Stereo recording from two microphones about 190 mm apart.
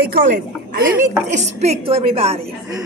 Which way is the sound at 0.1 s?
55° right (ahead or behind).